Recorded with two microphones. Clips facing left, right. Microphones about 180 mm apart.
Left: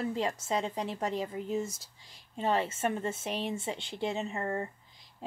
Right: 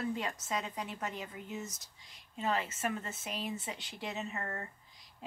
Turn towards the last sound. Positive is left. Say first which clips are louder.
# left 8 dB
turn(degrees=30)  # may be behind; listen again after turning